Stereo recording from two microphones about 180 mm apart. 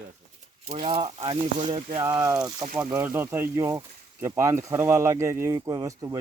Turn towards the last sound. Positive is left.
turn(degrees=-20)  # may be behind; listen again after turning